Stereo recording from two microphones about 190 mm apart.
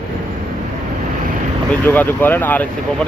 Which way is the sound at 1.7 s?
10° left (ahead or behind).